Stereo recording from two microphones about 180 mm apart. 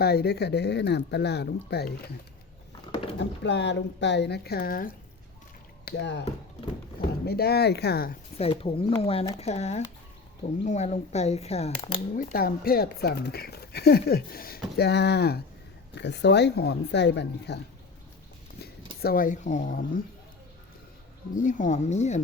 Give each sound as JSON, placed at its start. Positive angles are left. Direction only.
{"t": 0.0, "sound": "speech", "side_deg": 60}
{"t": 2.9, "sound": "a sound", "side_deg": 30}
{"t": 3.2, "sound": "speech", "side_deg": 75}
{"t": 5.8, "sound": "speech", "side_deg": 75}
{"t": 7.3, "sound": "speech", "side_deg": 60}
{"t": 8.4, "sound": "speech", "side_deg": 30}
{"t": 12.1, "sound": "speech", "side_deg": 50}
{"t": 19.0, "sound": "speech", "side_deg": 50}
{"t": 21.3, "sound": "speech", "side_deg": 45}